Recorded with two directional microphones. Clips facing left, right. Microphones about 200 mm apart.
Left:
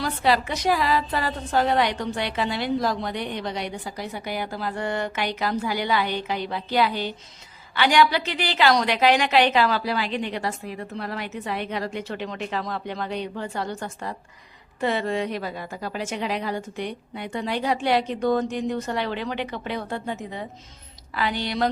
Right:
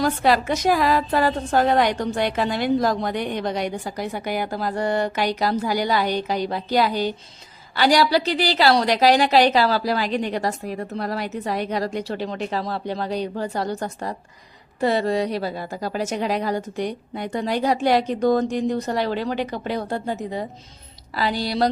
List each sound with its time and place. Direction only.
0.0 s a woman's voice: 45° right (ahead or behind)